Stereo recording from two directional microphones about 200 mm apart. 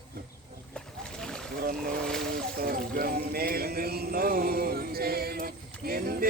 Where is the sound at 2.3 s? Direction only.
45° right (ahead or behind).